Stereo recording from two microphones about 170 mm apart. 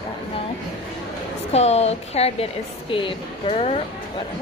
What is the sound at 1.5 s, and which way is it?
A woman's voice, 40° left (ahead or behind).